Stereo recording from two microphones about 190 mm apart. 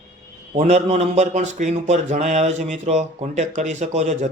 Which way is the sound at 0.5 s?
35° right (ahead or behind).